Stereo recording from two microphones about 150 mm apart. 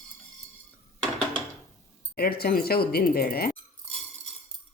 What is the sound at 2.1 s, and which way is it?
Speech, 90° left.